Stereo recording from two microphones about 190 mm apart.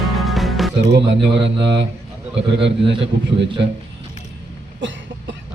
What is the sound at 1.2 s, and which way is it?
Mantra, 65° right (ahead or behind).